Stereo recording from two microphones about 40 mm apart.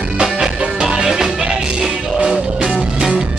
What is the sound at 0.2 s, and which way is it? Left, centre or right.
Music, centre.